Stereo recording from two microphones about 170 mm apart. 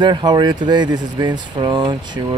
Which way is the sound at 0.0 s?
25° right (ahead or behind).